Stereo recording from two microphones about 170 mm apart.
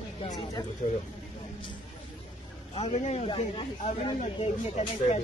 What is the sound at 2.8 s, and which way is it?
Speech, 40° left (ahead or behind).